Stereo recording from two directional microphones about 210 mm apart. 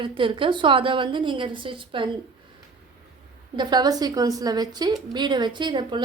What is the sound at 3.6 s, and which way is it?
A woman's voice, 20° right (ahead or behind).